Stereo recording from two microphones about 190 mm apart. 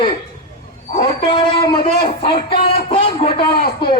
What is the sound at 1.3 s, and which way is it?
A man's voice, 25° left (ahead or behind).